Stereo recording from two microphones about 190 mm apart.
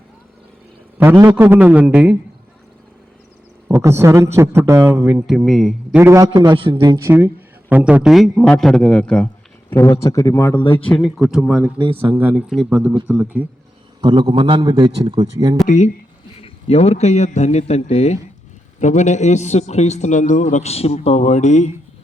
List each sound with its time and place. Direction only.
0.9 s a man's voice: 10° right (ahead or behind)
3.7 s a man's voice: 15° right (ahead or behind)
5.2 s a man's voice: centre (ahead or behind); by 10.8 s 25° left (ahead or behind)
10.8 s a man's voice: 5° left (ahead or behind)
11.8 s a man's voice: 30° right (ahead or behind)
12.1 s a man's voice: 10° right (ahead or behind)
14.0 s a man's voice: 25° right (ahead or behind)
15.6 s a man's voice: 40° left (ahead or behind)